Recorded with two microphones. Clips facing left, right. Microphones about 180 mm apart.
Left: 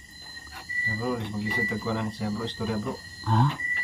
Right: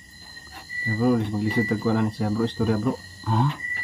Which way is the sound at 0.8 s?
55° right (ahead or behind).